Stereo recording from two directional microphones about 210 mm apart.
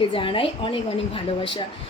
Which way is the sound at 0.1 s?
25° left (ahead or behind).